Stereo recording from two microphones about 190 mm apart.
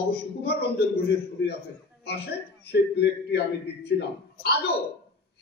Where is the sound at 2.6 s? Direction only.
60° left (ahead or behind).